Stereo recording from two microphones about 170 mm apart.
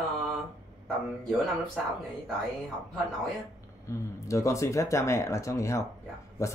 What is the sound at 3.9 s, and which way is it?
Speech, 20° left (ahead or behind).